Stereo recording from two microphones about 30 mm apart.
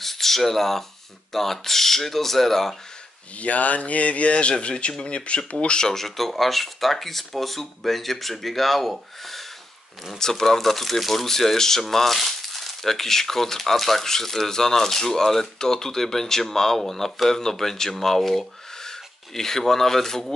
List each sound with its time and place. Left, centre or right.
0.0 s speech: centre
3.3 s a man's voice: left
5.9 s speech: centre
9.2 s a sound: centre
10.1 s speech: centre